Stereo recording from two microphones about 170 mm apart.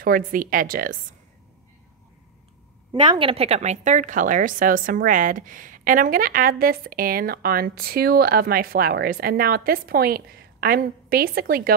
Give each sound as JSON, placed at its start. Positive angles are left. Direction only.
{"t": 0.0, "sound": "a woman's voice", "side_deg": -55}
{"t": 3.1, "sound": "a woman's voice", "side_deg": -30}